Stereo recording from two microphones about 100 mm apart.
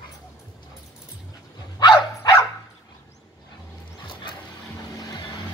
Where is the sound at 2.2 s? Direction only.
30° left (ahead or behind).